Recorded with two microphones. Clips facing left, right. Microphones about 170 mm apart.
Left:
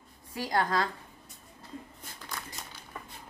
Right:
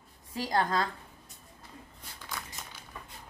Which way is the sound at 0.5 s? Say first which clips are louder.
Even; 25° right (ahead or behind).